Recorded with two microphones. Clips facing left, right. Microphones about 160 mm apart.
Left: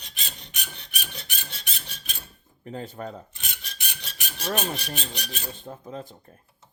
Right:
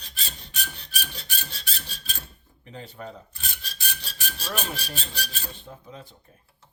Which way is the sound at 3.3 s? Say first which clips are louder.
Right 1 dB; 20° left (ahead or behind).